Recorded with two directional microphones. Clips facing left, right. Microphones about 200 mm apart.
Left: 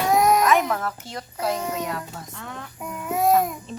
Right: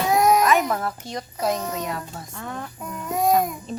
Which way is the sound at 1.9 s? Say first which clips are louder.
Even; 10° right (ahead or behind).